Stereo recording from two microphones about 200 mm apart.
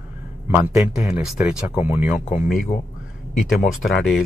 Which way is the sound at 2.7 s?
25° left (ahead or behind).